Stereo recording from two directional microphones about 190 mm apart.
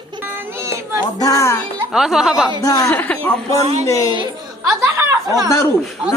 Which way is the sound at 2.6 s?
15° left (ahead or behind).